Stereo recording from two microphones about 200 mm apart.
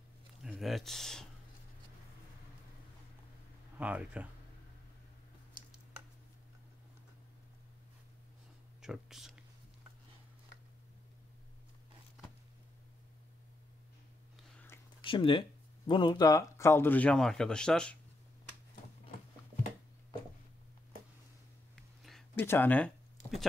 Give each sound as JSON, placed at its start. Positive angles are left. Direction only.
{"t": 0.4, "sound": "speech", "side_deg": 0}
{"t": 3.7, "sound": "speech", "side_deg": -5}
{"t": 8.8, "sound": "speech", "side_deg": 0}
{"t": 15.0, "sound": "speech", "side_deg": 25}
{"t": 21.7, "sound": "a sound", "side_deg": 0}